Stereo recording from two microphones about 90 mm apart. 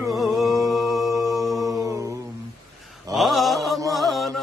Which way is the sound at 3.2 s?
Centre (ahead or behind).